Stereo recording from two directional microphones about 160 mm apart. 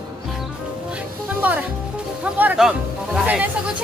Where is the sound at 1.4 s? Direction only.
10° right (ahead or behind).